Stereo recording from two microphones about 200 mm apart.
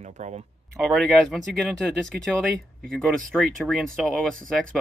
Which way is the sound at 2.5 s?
5° left (ahead or behind).